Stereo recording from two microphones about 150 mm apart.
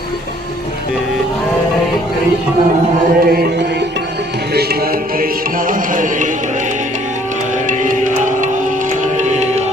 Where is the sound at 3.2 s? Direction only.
85° right.